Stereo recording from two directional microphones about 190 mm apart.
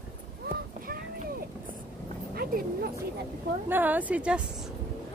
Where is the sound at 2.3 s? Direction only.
50° right (ahead or behind).